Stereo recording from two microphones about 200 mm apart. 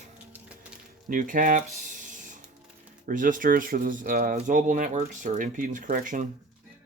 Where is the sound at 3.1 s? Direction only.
40° right (ahead or behind).